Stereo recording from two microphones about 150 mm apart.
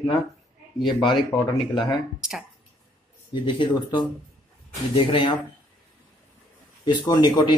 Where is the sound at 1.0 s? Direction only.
30° left (ahead or behind).